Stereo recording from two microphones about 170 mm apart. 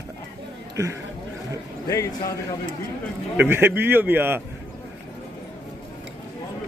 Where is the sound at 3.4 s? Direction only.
15° right (ahead or behind).